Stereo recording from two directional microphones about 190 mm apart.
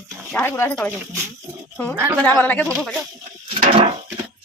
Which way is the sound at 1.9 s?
10° right (ahead or behind).